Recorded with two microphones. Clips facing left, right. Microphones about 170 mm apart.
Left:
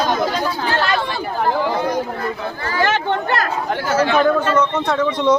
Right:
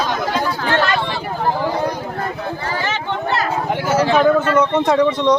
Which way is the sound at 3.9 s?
30° right (ahead or behind).